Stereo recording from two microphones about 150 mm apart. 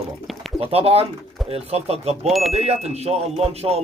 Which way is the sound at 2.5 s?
45° right (ahead or behind).